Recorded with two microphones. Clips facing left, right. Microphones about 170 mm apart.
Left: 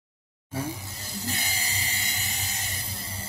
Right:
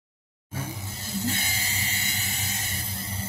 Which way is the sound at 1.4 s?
40° left (ahead or behind).